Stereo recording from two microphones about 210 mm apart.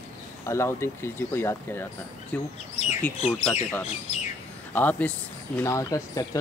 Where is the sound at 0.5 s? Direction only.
15° left (ahead or behind).